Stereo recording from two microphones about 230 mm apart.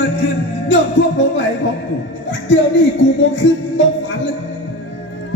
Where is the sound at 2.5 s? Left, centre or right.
Left.